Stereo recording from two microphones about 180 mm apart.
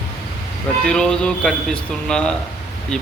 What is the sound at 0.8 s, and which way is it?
Speech, 5° left (ahead or behind).